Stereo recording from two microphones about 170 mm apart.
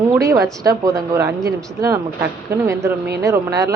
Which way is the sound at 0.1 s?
20° right (ahead or behind).